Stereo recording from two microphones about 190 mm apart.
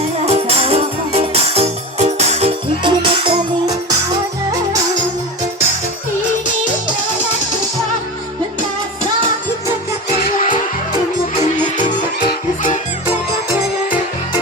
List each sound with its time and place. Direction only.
0.3 s music: 30° right (ahead or behind)
12.3 s music: 40° left (ahead or behind)